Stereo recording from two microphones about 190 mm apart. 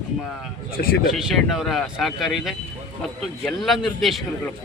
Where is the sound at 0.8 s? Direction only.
50° left (ahead or behind).